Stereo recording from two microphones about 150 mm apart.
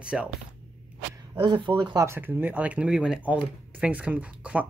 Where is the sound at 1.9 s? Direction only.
20° right (ahead or behind).